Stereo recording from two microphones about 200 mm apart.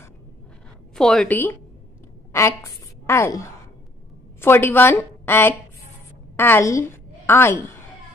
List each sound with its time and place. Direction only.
0.9 s a woman's voice: 5° left (ahead or behind)
3.1 s a woman's voice: 15° left (ahead or behind)